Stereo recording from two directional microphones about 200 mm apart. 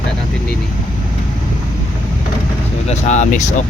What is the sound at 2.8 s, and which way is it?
Speech, 35° left (ahead or behind).